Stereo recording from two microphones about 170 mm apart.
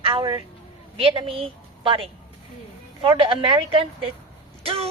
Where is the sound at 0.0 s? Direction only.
30° right (ahead or behind).